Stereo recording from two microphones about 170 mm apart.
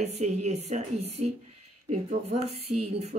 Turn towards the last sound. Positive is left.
turn(degrees=-40)  # may be behind; listen again after turning